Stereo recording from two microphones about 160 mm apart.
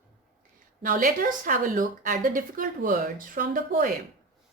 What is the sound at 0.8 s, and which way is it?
A woman's voice, 60° right (ahead or behind).